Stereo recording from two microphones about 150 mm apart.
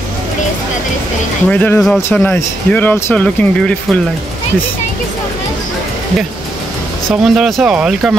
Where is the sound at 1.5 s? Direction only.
10° left (ahead or behind).